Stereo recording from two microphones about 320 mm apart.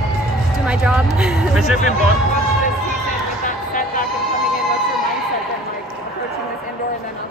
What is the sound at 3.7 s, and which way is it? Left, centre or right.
Music, left.